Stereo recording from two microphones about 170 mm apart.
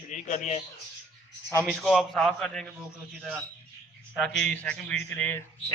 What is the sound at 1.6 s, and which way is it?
A man's voice, centre (ahead or behind).